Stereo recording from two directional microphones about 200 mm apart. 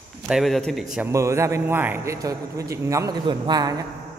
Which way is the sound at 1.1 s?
15° right (ahead or behind).